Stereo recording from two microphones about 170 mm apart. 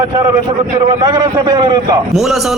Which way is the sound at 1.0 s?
25° right (ahead or behind).